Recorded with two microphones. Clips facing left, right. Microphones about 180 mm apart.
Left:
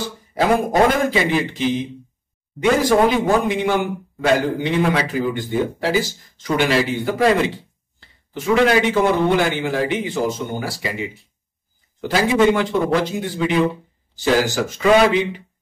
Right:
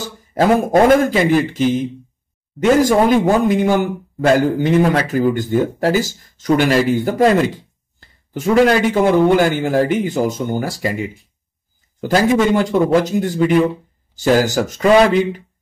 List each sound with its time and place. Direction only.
0.3 s a man's voice: 45° right (ahead or behind)